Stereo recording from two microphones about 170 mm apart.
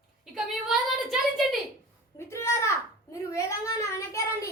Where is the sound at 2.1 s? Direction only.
15° left (ahead or behind).